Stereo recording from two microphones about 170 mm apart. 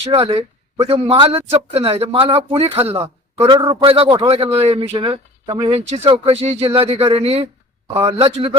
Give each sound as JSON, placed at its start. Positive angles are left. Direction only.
{"t": 0.0, "sound": "speech", "side_deg": -35}